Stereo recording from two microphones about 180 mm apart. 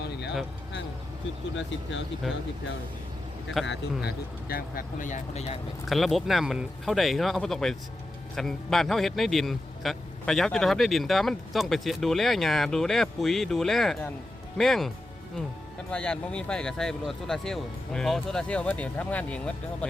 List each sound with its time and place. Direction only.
0.0 s vehicle: 65° left (ahead or behind)
3.7 s speech: 60° left (ahead or behind); by 5.5 s 35° left (ahead or behind)
5.9 s a man's voice: centre (ahead or behind)